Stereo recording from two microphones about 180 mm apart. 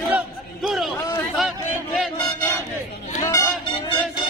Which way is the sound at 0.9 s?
15° left (ahead or behind).